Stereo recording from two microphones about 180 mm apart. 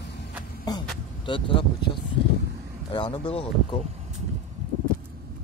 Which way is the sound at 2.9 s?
30° left (ahead or behind).